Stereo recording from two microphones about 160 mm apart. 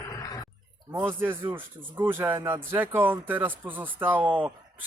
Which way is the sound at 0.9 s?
15° right (ahead or behind).